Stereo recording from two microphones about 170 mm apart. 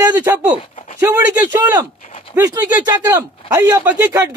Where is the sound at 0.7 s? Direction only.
45° left (ahead or behind).